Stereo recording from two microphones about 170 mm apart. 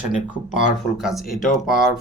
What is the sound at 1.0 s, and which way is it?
Speech, centre (ahead or behind).